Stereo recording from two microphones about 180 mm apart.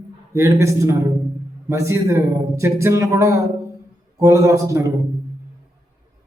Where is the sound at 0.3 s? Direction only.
15° right (ahead or behind).